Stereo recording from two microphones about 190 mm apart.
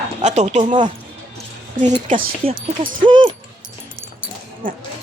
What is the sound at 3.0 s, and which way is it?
Speech, 25° right (ahead or behind).